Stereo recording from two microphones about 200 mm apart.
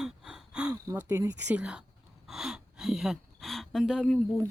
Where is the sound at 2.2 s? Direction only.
Centre (ahead or behind).